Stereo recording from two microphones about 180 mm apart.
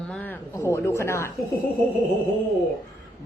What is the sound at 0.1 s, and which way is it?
Speech, 10° left (ahead or behind).